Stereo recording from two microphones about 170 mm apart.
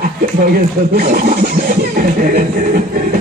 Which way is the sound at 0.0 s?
60° right (ahead or behind).